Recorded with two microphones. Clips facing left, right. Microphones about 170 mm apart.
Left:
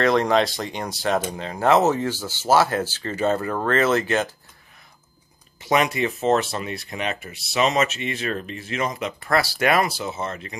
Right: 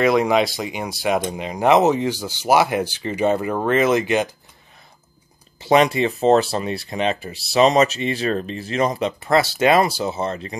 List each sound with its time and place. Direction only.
0.0 s speech: 10° right (ahead or behind)
5.6 s speech: 30° right (ahead or behind)
9.2 s speech: 25° right (ahead or behind)